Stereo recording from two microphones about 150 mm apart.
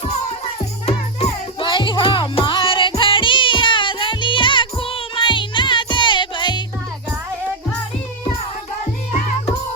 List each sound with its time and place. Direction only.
0.9 s music: 35° left (ahead or behind)